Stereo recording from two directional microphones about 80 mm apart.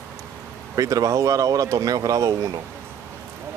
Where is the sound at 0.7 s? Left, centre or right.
Right.